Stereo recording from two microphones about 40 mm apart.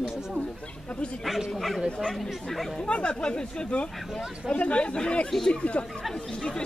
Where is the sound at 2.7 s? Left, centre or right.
Left.